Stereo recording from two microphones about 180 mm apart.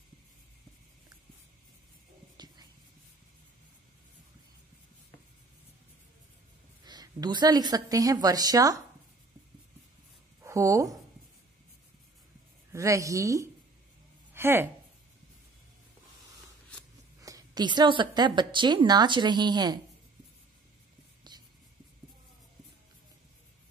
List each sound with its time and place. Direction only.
2.3 s whispering: 25° right (ahead or behind)
6.8 s a woman's voice: 20° right (ahead or behind)
10.4 s speech: 15° right (ahead or behind)
12.7 s speech: 15° right (ahead or behind)
17.2 s a woman's voice: 20° right (ahead or behind)